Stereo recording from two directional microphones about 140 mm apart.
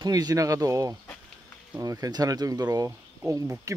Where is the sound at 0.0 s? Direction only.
30° right (ahead or behind).